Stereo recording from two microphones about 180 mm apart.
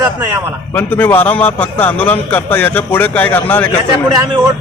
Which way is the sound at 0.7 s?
10° left (ahead or behind).